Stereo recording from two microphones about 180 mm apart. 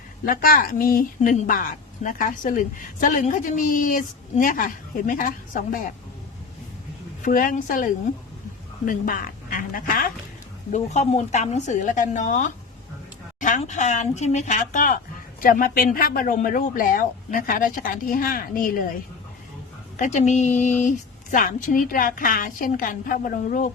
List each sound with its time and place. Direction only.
0.3 s a woman's voice: 50° left (ahead or behind)
7.2 s a woman's voice: 50° left (ahead or behind)
10.7 s a woman's voice: 40° left (ahead or behind)
20.0 s a woman's voice: 40° left (ahead or behind)